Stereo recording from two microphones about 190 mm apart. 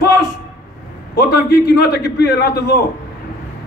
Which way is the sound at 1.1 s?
55° left (ahead or behind).